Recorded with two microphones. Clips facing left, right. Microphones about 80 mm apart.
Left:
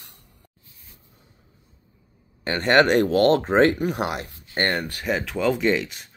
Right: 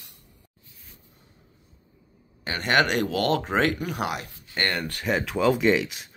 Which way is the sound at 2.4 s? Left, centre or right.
Left.